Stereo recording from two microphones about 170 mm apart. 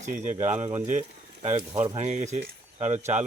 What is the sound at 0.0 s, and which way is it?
Speech, 45° right (ahead or behind).